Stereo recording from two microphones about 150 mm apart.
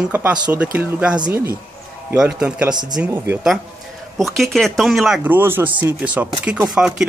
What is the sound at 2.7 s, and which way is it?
Speech, 30° right (ahead or behind).